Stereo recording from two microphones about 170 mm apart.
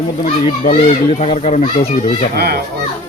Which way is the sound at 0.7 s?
35° left (ahead or behind).